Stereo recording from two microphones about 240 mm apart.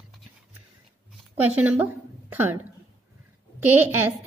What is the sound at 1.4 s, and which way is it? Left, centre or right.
A woman's voice, centre.